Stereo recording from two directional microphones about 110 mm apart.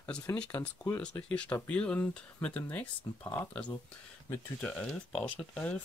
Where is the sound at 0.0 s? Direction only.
15° left (ahead or behind).